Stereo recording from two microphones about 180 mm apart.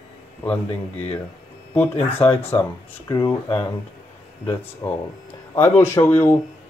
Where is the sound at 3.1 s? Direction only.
20° left (ahead or behind).